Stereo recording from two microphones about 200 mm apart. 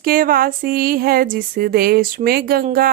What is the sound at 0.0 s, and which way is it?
Speech, 45° right (ahead or behind).